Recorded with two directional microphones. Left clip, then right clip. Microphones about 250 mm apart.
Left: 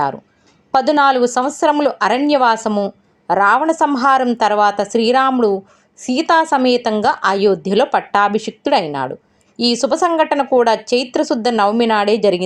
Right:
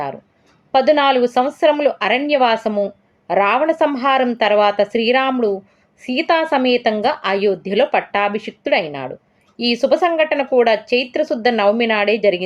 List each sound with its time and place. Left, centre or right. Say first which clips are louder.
0.7 s speech: left 1 dB; left